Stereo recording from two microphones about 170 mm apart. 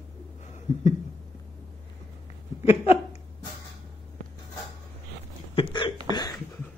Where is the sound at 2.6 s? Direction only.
35° left (ahead or behind).